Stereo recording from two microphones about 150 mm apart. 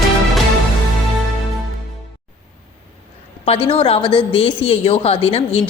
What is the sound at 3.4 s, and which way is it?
Speech, 40° left (ahead or behind).